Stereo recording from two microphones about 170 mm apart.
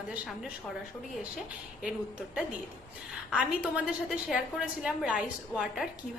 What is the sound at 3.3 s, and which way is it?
A woman's voice, 5° right (ahead or behind).